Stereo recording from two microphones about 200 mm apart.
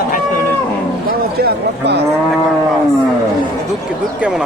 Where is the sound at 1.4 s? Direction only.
55° right (ahead or behind).